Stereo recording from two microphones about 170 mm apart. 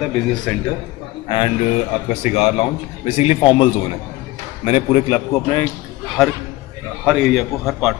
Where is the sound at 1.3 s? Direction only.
30° left (ahead or behind).